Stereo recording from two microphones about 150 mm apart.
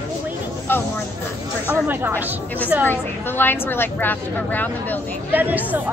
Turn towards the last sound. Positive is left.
turn(degrees=-10)  # may be behind; listen again after turning